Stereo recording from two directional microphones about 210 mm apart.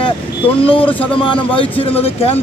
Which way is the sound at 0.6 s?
25° left (ahead or behind).